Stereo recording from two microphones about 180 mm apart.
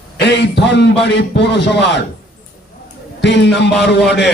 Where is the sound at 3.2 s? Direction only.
75° left (ahead or behind).